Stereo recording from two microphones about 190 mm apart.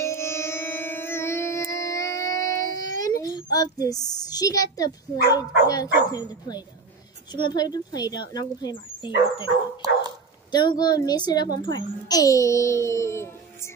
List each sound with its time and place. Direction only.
0.0 s music: 15° left (ahead or behind)
7.3 s speech: 20° left (ahead or behind)
10.5 s a child's voice: 20° left (ahead or behind)